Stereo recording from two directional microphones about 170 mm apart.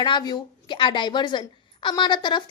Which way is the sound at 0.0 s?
25° left (ahead or behind).